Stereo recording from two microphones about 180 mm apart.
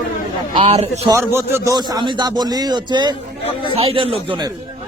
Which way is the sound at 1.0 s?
15° right (ahead or behind).